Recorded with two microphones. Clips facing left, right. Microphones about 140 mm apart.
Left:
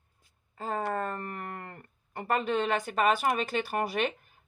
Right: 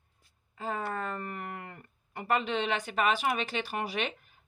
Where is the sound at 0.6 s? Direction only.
45° left (ahead or behind).